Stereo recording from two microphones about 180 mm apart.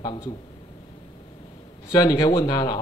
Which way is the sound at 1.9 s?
20° left (ahead or behind).